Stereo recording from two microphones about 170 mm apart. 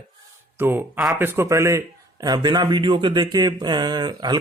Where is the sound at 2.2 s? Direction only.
20° right (ahead or behind).